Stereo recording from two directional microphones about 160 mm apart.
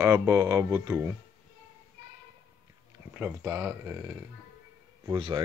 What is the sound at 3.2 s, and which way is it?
Speech, 15° right (ahead or behind).